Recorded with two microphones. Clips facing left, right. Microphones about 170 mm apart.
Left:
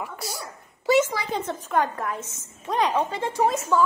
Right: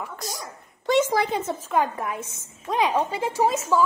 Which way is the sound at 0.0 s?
10° left (ahead or behind).